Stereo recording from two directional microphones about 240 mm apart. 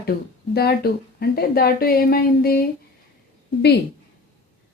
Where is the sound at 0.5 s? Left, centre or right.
Left.